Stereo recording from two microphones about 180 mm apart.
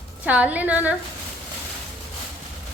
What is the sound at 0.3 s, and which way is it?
Speech, 10° right (ahead or behind).